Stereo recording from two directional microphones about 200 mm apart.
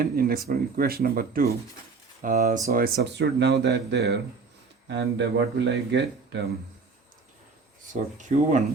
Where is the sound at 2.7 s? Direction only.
50° right (ahead or behind).